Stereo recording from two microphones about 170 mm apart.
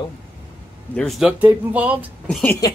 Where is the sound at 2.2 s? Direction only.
10° left (ahead or behind).